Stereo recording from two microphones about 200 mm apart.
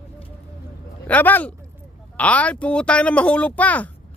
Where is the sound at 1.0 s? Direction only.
10° left (ahead or behind).